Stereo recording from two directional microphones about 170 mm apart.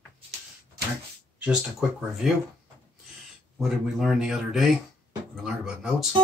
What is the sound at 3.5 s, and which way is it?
Speech, centre (ahead or behind).